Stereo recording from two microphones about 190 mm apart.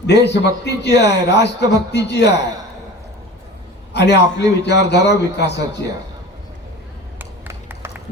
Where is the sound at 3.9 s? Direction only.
65° left (ahead or behind).